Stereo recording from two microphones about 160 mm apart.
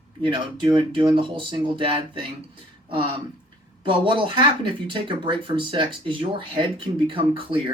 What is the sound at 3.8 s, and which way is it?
Speech, 30° right (ahead or behind).